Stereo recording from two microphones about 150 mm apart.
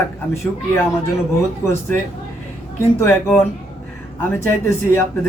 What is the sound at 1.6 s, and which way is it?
Speech, 15° left (ahead or behind).